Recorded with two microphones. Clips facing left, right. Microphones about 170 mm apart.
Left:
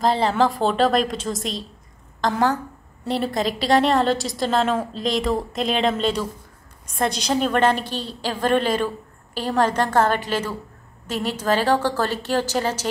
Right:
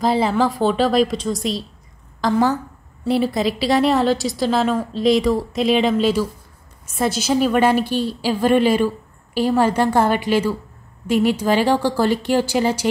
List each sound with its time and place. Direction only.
0.0 s a woman's voice: centre (ahead or behind)